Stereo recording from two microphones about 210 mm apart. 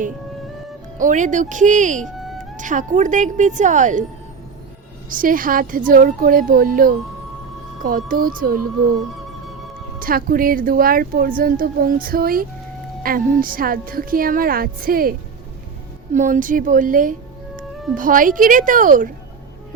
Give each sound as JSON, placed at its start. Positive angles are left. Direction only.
{"t": 0.9, "sound": "speech", "side_deg": -35}
{"t": 2.1, "sound": "music", "side_deg": 0}
{"t": 2.6, "sound": "speech", "side_deg": -35}
{"t": 5.0, "sound": "speech", "side_deg": -40}
{"t": 10.0, "sound": "speech", "side_deg": -45}
{"t": 16.1, "sound": "speech", "side_deg": -40}